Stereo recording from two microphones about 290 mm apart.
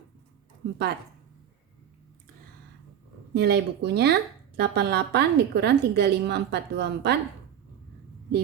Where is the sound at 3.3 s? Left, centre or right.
Right.